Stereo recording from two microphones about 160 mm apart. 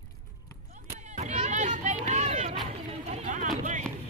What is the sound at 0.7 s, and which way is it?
Run, 45° right (ahead or behind).